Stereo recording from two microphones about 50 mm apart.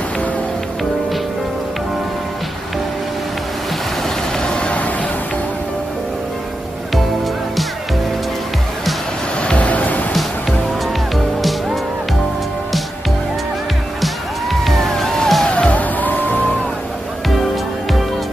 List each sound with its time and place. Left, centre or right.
4.4 s vehicle: centre
9.4 s music: left
14.0 s music: centre
15.4 s music: left